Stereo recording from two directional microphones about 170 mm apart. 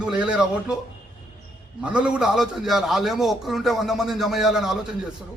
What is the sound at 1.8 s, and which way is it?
A man's voice, 5° right (ahead or behind).